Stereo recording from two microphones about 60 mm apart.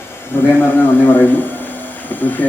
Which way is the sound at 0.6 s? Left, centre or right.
Left.